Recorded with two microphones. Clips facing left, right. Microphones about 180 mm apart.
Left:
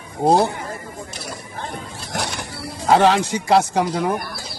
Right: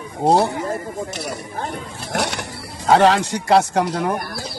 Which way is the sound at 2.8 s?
Centre (ahead or behind).